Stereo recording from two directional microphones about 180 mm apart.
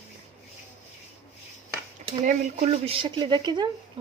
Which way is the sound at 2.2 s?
40° right (ahead or behind).